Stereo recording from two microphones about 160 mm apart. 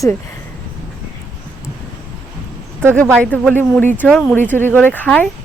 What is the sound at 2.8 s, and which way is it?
Speech, 15° right (ahead or behind).